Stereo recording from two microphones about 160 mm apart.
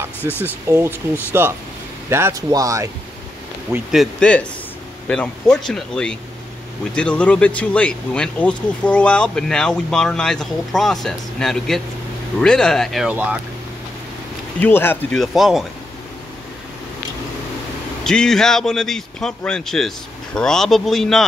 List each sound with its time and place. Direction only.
0.2 s speech: 15° left (ahead or behind)
1.3 s speech: 15° right (ahead or behind)
3.9 s speech: 5° left (ahead or behind)
14.6 s speech: 15° left (ahead or behind)
15.1 s speech: centre (ahead or behind)
18.0 s speech: 5° left (ahead or behind)